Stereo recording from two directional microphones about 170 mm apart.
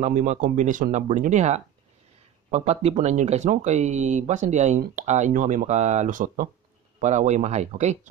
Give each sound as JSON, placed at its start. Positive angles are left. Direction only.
{"t": 0.0, "sound": "speech", "side_deg": -45}